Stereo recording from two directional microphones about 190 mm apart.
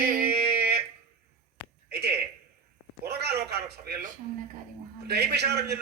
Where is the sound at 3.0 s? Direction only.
60° right (ahead or behind).